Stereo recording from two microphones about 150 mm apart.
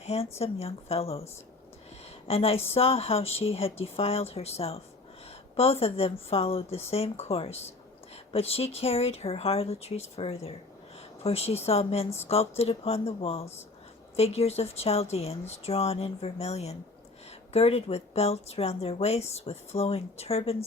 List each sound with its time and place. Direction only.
0.0 s speech: 45° left (ahead or behind)
2.2 s a woman's voice: 40° left (ahead or behind)